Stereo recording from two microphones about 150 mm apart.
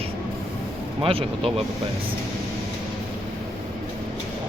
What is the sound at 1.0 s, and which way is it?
Speech, 35° right (ahead or behind).